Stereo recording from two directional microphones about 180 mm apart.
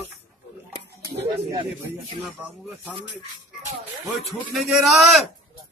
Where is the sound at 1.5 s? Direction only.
20° right (ahead or behind).